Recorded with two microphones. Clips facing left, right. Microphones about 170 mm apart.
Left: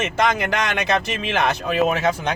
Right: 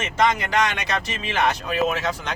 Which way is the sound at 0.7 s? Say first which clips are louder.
Left 5 dB; 55° left (ahead or behind).